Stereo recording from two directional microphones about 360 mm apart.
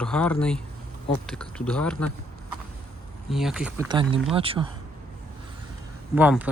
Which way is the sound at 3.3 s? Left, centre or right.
Centre.